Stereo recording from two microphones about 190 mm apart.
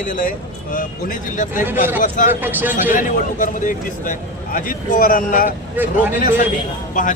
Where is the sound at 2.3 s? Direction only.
10° right (ahead or behind).